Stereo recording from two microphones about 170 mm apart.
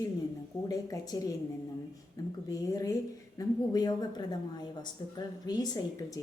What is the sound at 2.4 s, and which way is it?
A woman's voice, 20° left (ahead or behind).